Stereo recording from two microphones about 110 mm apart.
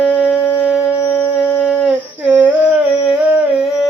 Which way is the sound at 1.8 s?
15° right (ahead or behind).